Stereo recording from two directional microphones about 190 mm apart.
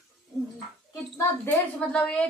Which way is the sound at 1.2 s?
10° left (ahead or behind).